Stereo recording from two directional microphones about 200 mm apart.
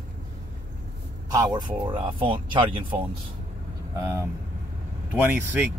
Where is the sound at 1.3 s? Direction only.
20° right (ahead or behind).